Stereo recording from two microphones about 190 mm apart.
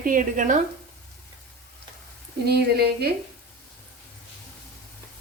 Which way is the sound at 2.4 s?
55° right (ahead or behind).